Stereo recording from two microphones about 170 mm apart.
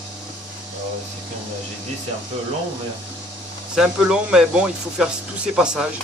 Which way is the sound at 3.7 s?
5° right (ahead or behind).